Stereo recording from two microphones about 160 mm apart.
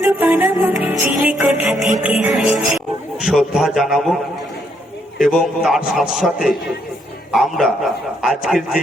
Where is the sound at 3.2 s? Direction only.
5° right (ahead or behind).